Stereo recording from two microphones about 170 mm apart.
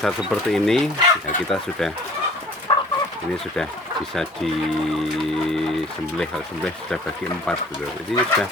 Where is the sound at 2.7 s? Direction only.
30° left (ahead or behind).